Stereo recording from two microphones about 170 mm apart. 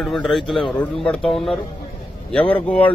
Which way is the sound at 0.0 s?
5° left (ahead or behind).